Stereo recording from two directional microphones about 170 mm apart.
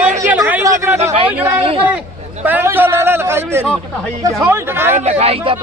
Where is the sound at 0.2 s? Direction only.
15° right (ahead or behind).